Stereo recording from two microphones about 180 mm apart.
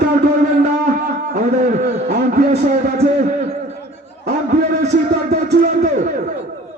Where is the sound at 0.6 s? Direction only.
50° right (ahead or behind).